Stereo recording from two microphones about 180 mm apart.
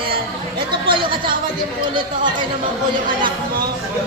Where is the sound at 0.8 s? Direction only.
25° right (ahead or behind).